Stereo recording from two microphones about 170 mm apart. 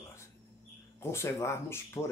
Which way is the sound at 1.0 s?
15° left (ahead or behind).